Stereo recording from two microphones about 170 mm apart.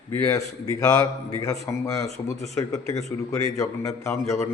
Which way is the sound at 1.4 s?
20° left (ahead or behind).